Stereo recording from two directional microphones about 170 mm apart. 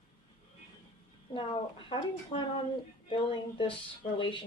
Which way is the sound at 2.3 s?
30° left (ahead or behind).